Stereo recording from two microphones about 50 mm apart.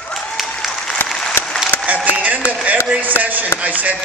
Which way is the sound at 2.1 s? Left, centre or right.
Right.